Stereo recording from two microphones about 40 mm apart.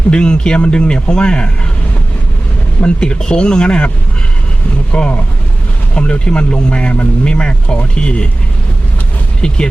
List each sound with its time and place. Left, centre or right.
0.1 s a man's voice: left
2.8 s a man's voice: left
4.9 s a man's voice: left
9.4 s a man's voice: centre